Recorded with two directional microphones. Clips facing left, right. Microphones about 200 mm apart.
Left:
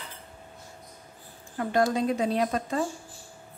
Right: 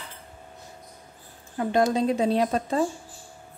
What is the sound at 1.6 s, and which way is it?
A woman's voice, 20° right (ahead or behind).